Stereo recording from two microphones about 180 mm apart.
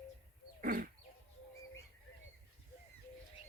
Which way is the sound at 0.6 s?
50° right (ahead or behind).